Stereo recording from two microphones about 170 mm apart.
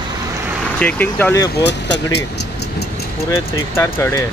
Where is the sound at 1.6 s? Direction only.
85° left.